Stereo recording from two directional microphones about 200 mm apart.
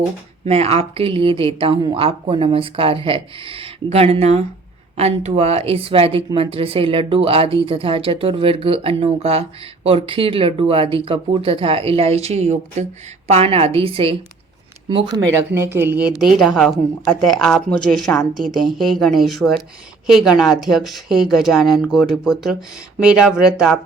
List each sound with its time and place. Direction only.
0.4 s a woman's voice: 30° right (ahead or behind); by 23.8 s centre (ahead or behind)